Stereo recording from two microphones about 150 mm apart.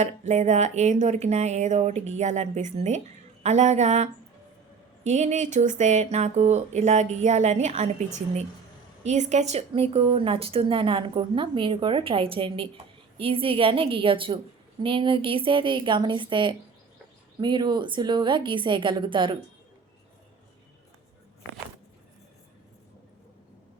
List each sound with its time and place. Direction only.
0.0 s a woman's voice: 50° right (ahead or behind); by 19.4 s 35° right (ahead or behind)